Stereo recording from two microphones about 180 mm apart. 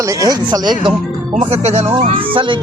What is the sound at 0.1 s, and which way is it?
Speech, 20° right (ahead or behind).